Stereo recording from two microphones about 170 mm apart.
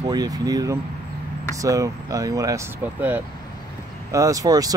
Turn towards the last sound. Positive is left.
turn(degrees=-20)  # may be behind; listen again after turning